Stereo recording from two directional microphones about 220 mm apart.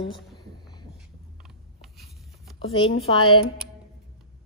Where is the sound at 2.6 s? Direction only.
25° left (ahead or behind).